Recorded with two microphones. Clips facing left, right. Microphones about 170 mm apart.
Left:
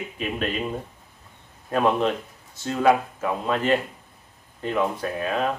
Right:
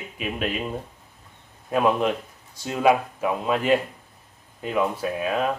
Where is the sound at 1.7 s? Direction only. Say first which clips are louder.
Even; 10° right (ahead or behind).